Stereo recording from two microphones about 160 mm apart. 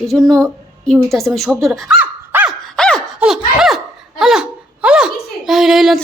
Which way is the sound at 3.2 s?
5° right (ahead or behind).